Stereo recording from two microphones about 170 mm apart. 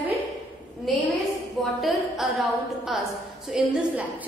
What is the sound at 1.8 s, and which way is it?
A woman's voice, centre (ahead or behind).